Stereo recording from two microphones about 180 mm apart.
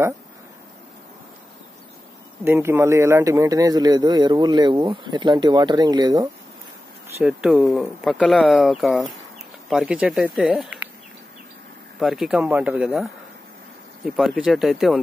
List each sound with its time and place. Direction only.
2.4 s a man's voice: 15° right (ahead or behind)
7.2 s speech: 10° right (ahead or behind)
12.0 s speech: centre (ahead or behind)